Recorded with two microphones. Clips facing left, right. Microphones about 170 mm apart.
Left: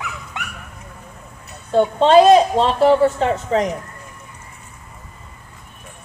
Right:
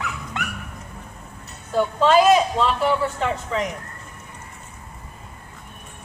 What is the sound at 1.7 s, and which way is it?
A woman's voice, 30° left (ahead or behind).